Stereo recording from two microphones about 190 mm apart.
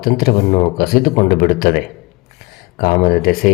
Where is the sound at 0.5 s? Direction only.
45° left (ahead or behind).